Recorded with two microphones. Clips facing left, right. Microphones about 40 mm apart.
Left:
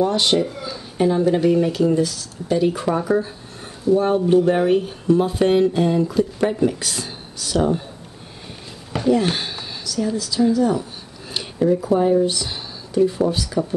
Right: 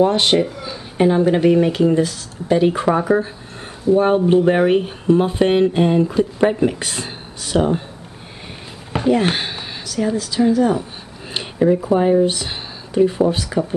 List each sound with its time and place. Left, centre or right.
0.0 s speech: right
8.9 s speech: right